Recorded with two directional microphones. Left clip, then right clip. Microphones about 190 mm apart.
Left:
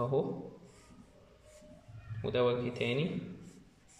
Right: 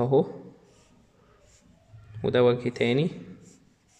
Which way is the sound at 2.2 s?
40° right (ahead or behind).